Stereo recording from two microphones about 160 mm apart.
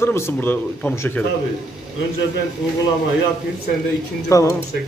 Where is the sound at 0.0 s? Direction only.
15° left (ahead or behind).